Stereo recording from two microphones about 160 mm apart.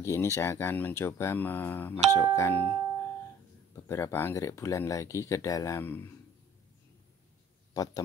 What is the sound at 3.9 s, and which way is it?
Speech, 15° left (ahead or behind).